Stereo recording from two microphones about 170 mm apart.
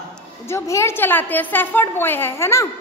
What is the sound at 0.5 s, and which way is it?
A woman's voice, 15° left (ahead or behind).